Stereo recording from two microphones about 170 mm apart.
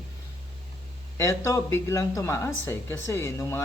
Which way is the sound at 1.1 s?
15° left (ahead or behind).